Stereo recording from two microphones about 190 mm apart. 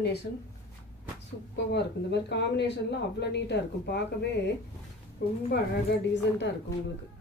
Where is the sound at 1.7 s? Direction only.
65° left (ahead or behind).